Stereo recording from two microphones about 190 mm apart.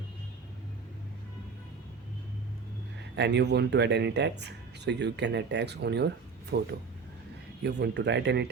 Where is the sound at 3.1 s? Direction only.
65° right (ahead or behind).